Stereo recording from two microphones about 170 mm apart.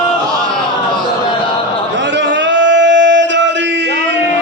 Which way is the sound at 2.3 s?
90° right.